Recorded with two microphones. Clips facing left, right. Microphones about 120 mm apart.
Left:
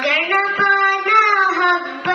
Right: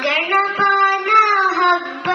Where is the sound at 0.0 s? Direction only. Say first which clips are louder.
Right 1 dB; 30° right (ahead or behind).